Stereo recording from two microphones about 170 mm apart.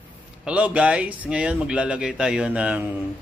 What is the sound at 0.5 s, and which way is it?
Speech, 5° right (ahead or behind).